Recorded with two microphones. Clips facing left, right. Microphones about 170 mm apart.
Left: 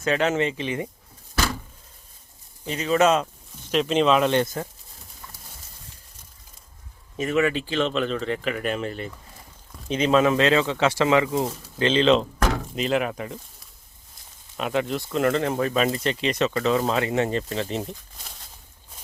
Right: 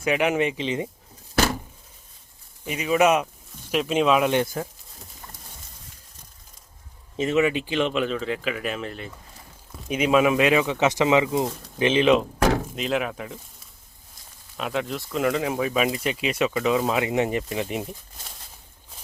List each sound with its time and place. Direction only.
0.0 s speech: 15° right (ahead or behind)
2.6 s speech: 10° right (ahead or behind)
7.2 s speech: 25° right (ahead or behind)
12.7 s speech: centre (ahead or behind)